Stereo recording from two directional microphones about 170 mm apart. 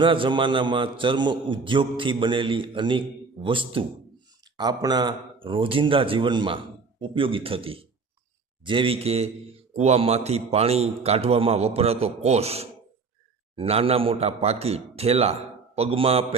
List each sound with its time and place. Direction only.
0.0 s a man's voice: 30° right (ahead or behind)